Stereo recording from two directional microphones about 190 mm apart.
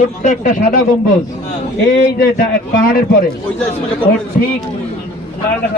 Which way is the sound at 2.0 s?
50° left (ahead or behind).